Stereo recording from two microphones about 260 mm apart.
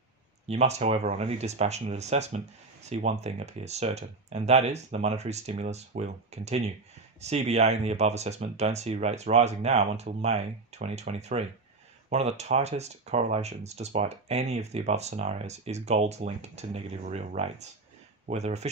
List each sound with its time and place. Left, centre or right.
0.5 s speech: right